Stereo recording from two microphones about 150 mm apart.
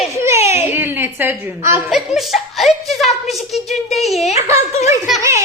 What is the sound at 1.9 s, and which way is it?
A woman's voice, centre (ahead or behind).